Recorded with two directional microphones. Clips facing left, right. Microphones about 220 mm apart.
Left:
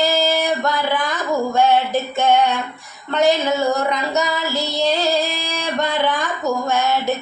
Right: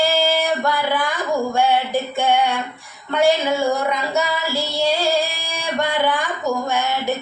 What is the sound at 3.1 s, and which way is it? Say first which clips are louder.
Child singing: even; 10° right (ahead or behind).